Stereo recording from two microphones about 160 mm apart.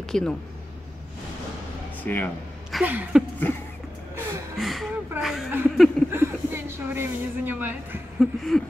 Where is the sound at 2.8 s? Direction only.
10° right (ahead or behind).